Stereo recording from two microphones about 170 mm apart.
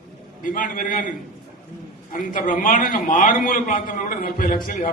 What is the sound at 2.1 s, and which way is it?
A man's voice, 50° left (ahead or behind).